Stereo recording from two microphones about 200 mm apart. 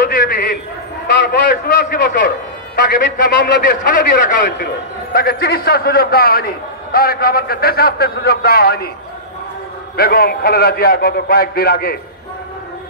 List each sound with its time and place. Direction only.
0.0 s a sound: 50° left (ahead or behind)
1.4 s a man's voice: 50° left (ahead or behind)
9.9 s a man's voice: 50° left (ahead or behind)